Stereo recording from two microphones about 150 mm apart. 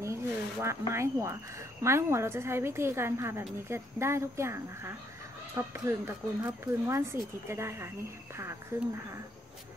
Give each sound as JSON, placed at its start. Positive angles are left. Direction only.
{"t": 0.0, "sound": "speech", "side_deg": -20}